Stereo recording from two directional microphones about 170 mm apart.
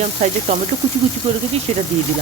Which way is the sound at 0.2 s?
45° right (ahead or behind).